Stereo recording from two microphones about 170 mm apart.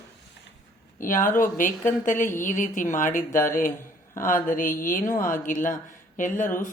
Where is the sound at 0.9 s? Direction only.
50° left (ahead or behind).